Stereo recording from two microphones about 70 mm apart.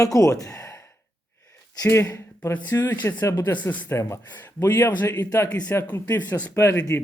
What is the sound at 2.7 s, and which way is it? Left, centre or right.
Speech, left.